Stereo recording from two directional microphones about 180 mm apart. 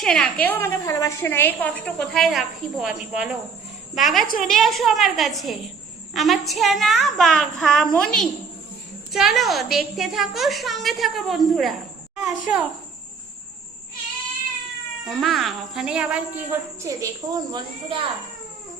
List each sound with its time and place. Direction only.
0.0 s a woman's voice: 5° left (ahead or behind)
15.0 s speech: centre (ahead or behind); by 18.0 s 25° right (ahead or behind)